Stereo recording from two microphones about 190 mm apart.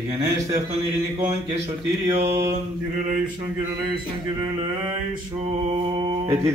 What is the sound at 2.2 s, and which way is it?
Mantra, 15° right (ahead or behind).